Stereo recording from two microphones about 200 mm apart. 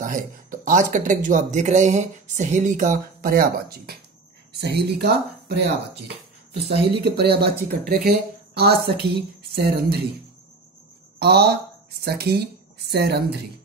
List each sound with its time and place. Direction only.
0.0 s speech: 40° right (ahead or behind)
11.1 s speech: 55° right (ahead or behind)